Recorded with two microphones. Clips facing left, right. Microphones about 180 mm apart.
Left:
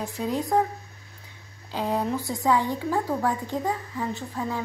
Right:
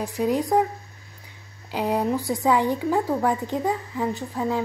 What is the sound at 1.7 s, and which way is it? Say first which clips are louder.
Speech: right 3 dB; 15° right (ahead or behind).